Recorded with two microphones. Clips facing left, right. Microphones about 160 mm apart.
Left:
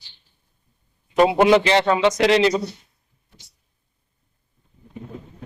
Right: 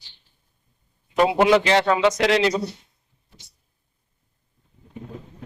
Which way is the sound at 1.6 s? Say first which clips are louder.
Left 1 dB; 5° right (ahead or behind).